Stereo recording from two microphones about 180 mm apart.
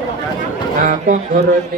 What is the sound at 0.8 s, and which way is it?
Speech, 45° right (ahead or behind).